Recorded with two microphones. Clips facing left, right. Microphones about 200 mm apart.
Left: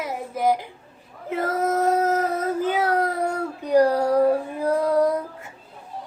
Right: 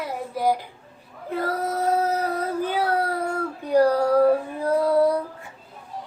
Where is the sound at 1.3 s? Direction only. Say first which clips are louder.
Left 2 dB; 20° left (ahead or behind).